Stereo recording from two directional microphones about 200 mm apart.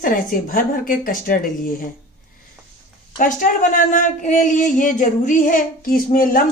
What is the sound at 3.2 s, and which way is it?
Speech, 45° left (ahead or behind).